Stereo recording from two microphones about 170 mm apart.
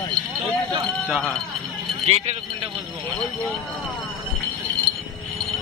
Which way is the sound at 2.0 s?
35° right (ahead or behind).